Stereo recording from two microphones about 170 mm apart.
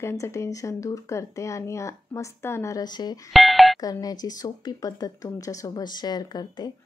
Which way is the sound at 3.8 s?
20° left (ahead or behind).